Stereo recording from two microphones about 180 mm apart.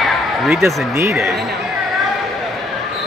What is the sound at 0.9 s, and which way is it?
Speech, 15° right (ahead or behind).